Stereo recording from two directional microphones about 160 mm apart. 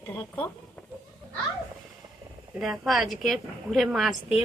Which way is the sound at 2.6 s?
Centre (ahead or behind).